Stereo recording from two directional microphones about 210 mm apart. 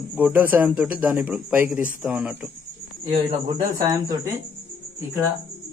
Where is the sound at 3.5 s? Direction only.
20° right (ahead or behind).